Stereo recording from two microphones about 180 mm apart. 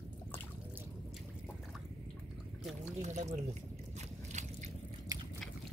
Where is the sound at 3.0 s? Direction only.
40° right (ahead or behind).